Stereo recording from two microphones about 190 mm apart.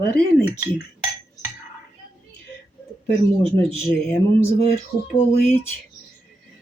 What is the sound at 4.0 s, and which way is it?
Speech, 5° left (ahead or behind).